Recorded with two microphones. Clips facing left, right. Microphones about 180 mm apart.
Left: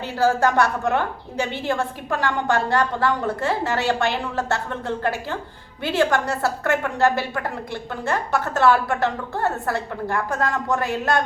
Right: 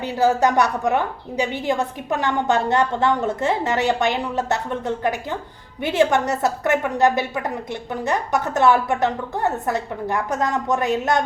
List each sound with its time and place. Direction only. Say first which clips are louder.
0.0 s a woman's voice: right 1 dB; 20° right (ahead or behind)